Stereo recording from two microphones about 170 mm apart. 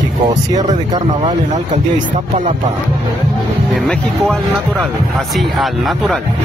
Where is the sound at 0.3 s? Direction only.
45° right (ahead or behind).